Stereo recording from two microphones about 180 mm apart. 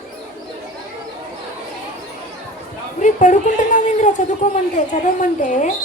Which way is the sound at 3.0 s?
45° left (ahead or behind).